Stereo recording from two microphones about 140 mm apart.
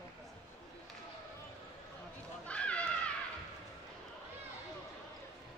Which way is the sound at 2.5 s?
10° left (ahead or behind).